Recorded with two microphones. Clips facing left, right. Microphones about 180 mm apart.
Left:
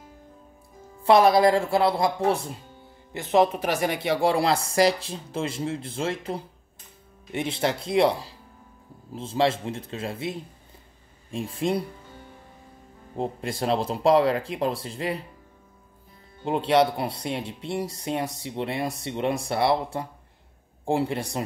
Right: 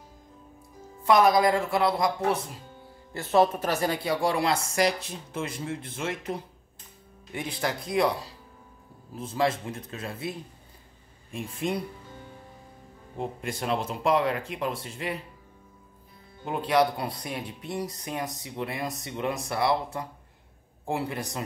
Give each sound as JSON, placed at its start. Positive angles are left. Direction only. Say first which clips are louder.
{"t": 1.0, "sound": "speech", "louder": "left 3 dB", "side_deg": 30}
{"t": 3.1, "sound": "speech", "louder": "left 1 dB", "side_deg": 20}
{"t": 11.3, "sound": "speech", "louder": "left 4 dB", "side_deg": 30}
{"t": 13.2, "sound": "speech", "louder": "left 4 dB", "side_deg": 35}
{"t": 16.4, "sound": "speech", "louder": "left 3 dB", "side_deg": 25}